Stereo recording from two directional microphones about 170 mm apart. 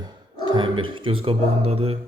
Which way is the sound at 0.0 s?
30° right (ahead or behind).